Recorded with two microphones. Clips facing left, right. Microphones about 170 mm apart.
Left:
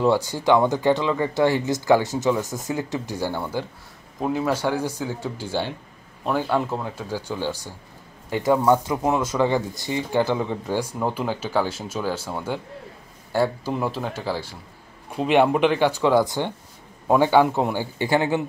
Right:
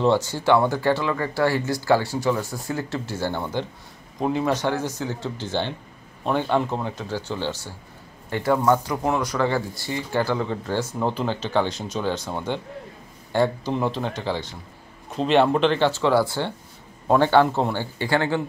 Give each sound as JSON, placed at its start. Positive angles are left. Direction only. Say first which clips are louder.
{"t": 0.0, "sound": "speech", "louder": "even", "side_deg": 10}